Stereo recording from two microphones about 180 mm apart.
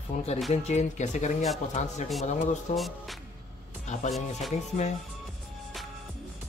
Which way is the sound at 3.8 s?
40° left (ahead or behind).